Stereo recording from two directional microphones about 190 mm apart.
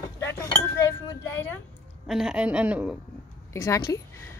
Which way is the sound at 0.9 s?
10° left (ahead or behind).